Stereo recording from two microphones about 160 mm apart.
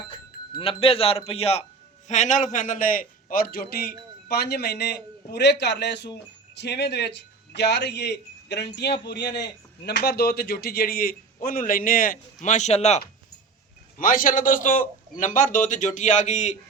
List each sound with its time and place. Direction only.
0.1 s speech: 35° left (ahead or behind)
2.0 s a man's voice: 50° left (ahead or behind); by 3.9 s 75° left (ahead or behind)
4.3 s a man's voice: 85° left; by 13.0 s 40° left (ahead or behind)
14.0 s a man's voice: 60° left (ahead or behind); by 16.6 s 45° left (ahead or behind)